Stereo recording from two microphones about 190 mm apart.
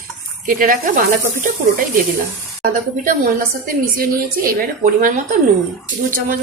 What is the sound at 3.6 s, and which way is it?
Speech, 50° right (ahead or behind).